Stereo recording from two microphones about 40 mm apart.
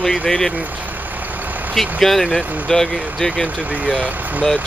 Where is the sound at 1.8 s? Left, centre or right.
Centre.